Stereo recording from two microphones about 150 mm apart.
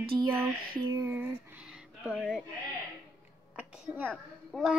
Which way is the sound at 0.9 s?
15° right (ahead or behind).